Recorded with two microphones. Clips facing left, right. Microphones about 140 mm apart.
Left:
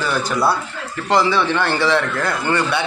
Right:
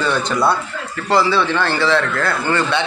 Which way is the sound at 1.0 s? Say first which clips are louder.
Right 1 dB; 15° left (ahead or behind).